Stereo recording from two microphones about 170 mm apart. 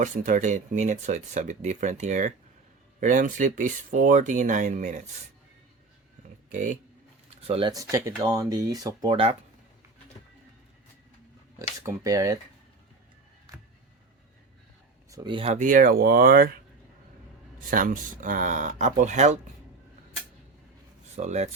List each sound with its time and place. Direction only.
0.0 s speech: 50° right (ahead or behind)
6.5 s speech: 50° right (ahead or behind)
7.4 s speech: 35° right (ahead or behind)
7.7 s speech: 20° right (ahead or behind)
11.9 s speech: 20° right (ahead or behind)
15.1 s speech: 25° right (ahead or behind)
15.5 s speech: 50° right (ahead or behind)
17.7 s speech: 55° right (ahead or behind)
21.2 s speech: 40° right (ahead or behind)